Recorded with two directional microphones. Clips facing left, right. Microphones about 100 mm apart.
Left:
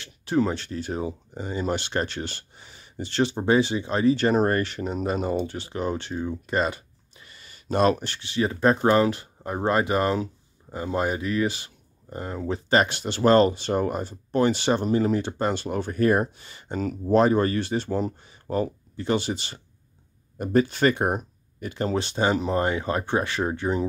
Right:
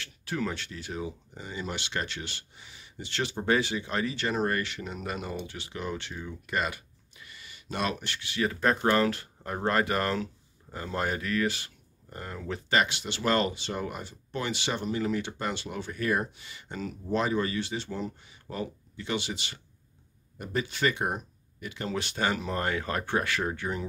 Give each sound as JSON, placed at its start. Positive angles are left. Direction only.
{"t": 0.0, "sound": "speech", "side_deg": 25}
{"t": 4.1, "sound": "speech", "side_deg": 40}